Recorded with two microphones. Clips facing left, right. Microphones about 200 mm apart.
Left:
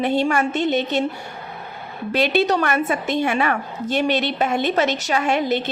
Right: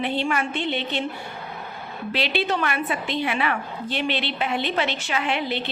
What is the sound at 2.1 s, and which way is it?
A woman's voice, 45° left (ahead or behind).